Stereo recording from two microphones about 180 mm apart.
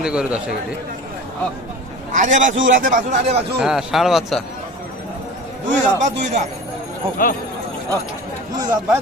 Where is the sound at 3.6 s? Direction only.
Centre (ahead or behind).